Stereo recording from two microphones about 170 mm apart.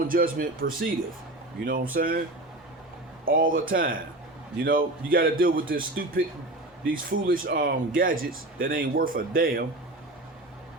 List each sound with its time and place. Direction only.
0.1 s speech: 55° right (ahead or behind)
3.2 s speech: 55° right (ahead or behind)